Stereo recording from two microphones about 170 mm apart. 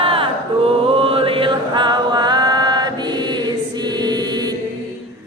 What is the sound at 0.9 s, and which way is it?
Chant, 35° right (ahead or behind).